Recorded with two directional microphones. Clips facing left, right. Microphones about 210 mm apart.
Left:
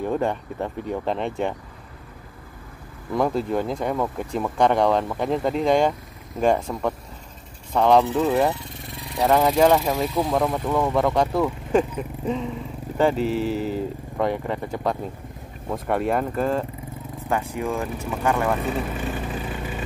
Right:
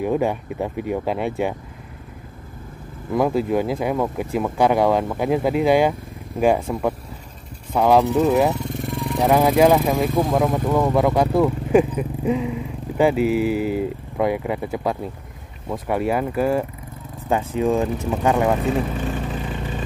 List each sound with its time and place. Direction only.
0.0 s speech: 10° right (ahead or behind)
3.1 s speech: 5° right (ahead or behind)
8.5 s vehicle: 45° right (ahead or behind)
9.2 s speech: 10° right (ahead or behind)
9.9 s speech: 50° right (ahead or behind)
10.3 s speech: 5° right (ahead or behind)